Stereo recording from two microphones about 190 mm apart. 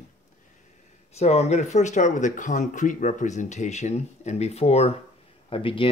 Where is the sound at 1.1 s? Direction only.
35° left (ahead or behind).